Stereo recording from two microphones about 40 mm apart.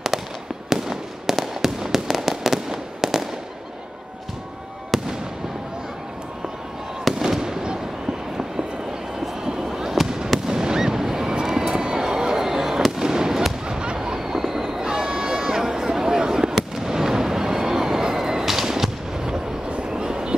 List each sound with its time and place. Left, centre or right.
0.7 s fireworks: centre
4.9 s fireworks: centre
7.2 s fireworks: centre
9.4 s a sound: centre
10.5 s fireworks: centre
13.7 s run: right
16.5 s fireworks: centre
19.9 s vehicle: centre